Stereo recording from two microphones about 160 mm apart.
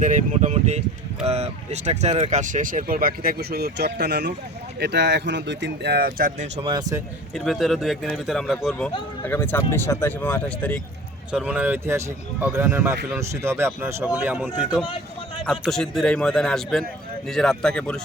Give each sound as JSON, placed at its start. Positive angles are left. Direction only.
{"t": 0.0, "sound": "speech", "side_deg": -50}
{"t": 6.6, "sound": "speech", "side_deg": -30}
{"t": 7.3, "sound": "speech", "side_deg": 0}
{"t": 9.2, "sound": "speech", "side_deg": 10}
{"t": 11.3, "sound": "speech", "side_deg": -5}